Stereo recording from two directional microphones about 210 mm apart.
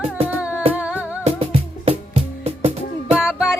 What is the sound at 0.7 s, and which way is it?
Music, 5° right (ahead or behind).